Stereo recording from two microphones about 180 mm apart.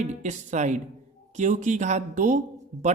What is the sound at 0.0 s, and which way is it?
Speech, 40° right (ahead or behind).